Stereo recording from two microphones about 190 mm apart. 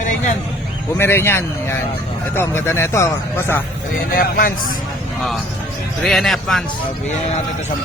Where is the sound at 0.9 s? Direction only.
10° left (ahead or behind).